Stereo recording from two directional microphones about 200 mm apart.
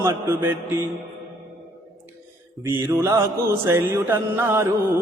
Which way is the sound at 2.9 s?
15° right (ahead or behind).